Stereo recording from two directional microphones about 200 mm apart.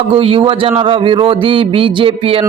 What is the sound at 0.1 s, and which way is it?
A man's voice, 25° right (ahead or behind).